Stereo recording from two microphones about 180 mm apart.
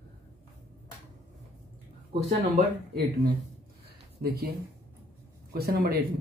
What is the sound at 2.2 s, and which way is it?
Speech, 35° right (ahead or behind).